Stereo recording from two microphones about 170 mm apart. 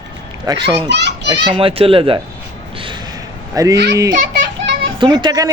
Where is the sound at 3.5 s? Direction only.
20° right (ahead or behind).